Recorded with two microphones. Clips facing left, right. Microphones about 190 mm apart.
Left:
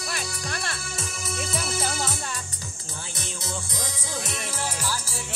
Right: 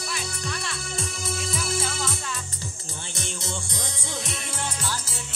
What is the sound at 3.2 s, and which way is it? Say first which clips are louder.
Music: right 1 dB; 5° left (ahead or behind).